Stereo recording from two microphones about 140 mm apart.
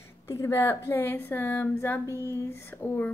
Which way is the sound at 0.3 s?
20° left (ahead or behind).